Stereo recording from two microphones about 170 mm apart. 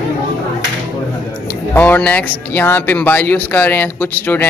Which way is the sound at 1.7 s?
10° left (ahead or behind).